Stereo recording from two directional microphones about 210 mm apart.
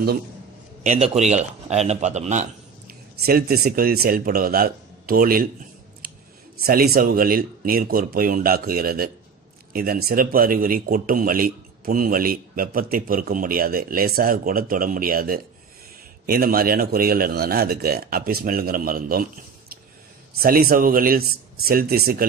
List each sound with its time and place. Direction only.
0.8 s a man's voice: 30° right (ahead or behind)
2.9 s speech: 45° right (ahead or behind)
6.6 s speech: 45° right (ahead or behind)
20.3 s speech: 45° right (ahead or behind)